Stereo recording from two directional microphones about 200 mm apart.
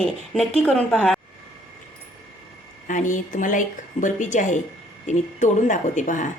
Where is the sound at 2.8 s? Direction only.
40° left (ahead or behind).